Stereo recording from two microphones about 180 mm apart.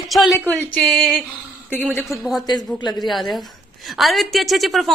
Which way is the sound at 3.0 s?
Centre (ahead or behind).